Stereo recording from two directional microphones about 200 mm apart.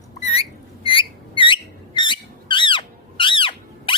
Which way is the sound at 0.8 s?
25° left (ahead or behind).